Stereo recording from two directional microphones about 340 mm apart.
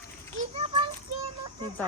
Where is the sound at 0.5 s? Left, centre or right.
Centre.